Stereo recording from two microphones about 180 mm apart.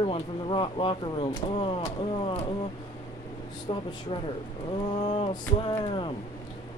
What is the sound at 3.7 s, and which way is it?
Speech, 25° left (ahead or behind).